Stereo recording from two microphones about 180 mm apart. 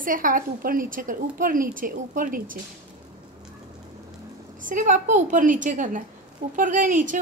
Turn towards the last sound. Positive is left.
turn(degrees=-45)  # may be behind; listen again after turning